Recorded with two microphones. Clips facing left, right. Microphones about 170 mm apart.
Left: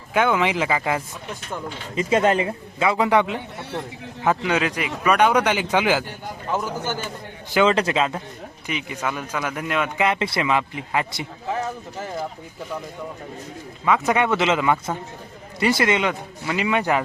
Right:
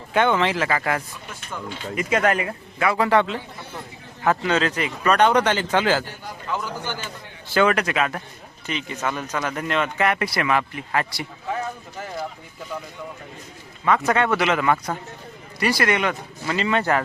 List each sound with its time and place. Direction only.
0.1 s speech: 5° left (ahead or behind)
2.0 s speech: 25° left (ahead or behind)
6.2 s speech: 45° left (ahead or behind)
7.5 s speech: 20° left (ahead or behind)
8.6 s speech: 10° left (ahead or behind)
10.1 s speech: 25° left (ahead or behind)
13.8 s speech: 5° left (ahead or behind)